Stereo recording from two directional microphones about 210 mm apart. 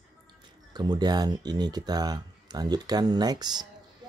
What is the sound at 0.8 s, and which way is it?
Speech, 20° right (ahead or behind).